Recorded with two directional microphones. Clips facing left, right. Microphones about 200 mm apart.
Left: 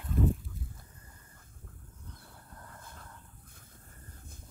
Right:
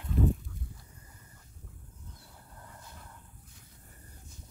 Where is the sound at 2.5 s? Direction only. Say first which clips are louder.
Even; 10° right (ahead or behind).